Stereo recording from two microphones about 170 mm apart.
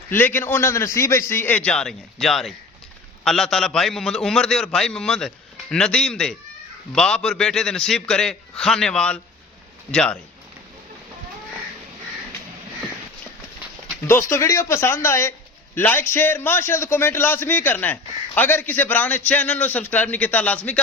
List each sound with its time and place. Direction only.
0.1 s a man's voice: 10° left (ahead or behind)
14.1 s a man's voice: 15° left (ahead or behind)